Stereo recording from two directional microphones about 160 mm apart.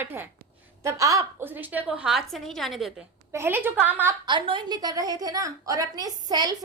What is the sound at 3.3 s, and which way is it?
Speech, 15° right (ahead or behind).